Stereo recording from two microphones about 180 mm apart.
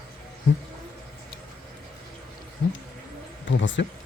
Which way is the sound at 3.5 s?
85° left.